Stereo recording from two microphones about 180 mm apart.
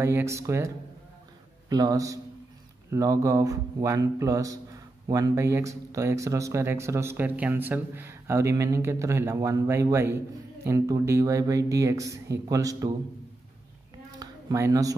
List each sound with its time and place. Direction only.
0.0 s a man's voice: 15° right (ahead or behind)
14.2 s speech: 20° right (ahead or behind)